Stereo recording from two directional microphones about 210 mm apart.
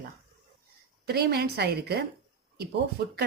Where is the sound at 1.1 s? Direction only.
50° right (ahead or behind).